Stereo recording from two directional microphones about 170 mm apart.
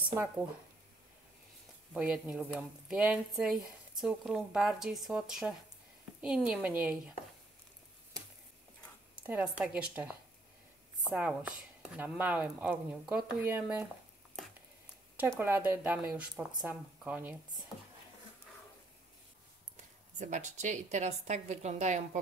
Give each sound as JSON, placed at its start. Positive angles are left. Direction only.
{"t": 2.0, "sound": "speech", "side_deg": -5}
{"t": 9.2, "sound": "speech", "side_deg": -10}
{"t": 11.1, "sound": "speech", "side_deg": -10}
{"t": 15.1, "sound": "speech", "side_deg": -10}
{"t": 20.2, "sound": "a woman's voice", "side_deg": -45}